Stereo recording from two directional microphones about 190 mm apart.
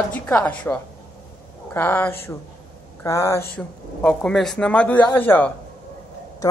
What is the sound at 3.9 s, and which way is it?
Speech, 5° left (ahead or behind).